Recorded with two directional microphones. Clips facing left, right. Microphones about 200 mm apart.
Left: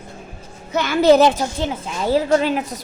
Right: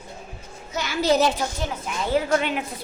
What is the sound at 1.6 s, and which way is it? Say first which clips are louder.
A woman's voice: left 5 dB; 30° left (ahead or behind).